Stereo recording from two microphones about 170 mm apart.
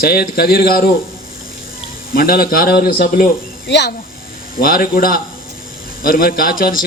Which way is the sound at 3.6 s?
90° left.